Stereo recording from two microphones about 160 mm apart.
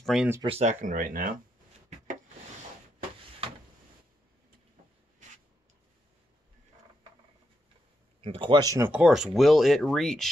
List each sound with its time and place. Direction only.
0.0 s speech: centre (ahead or behind)
0.5 s speech: 45° right (ahead or behind); by 1.3 s 60° right (ahead or behind)
8.2 s speech: 30° right (ahead or behind); by 10.3 s centre (ahead or behind)